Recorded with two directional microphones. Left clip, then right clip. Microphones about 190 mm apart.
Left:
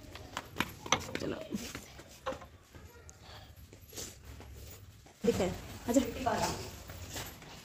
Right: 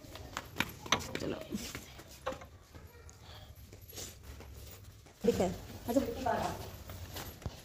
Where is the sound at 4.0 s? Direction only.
25° left (ahead or behind).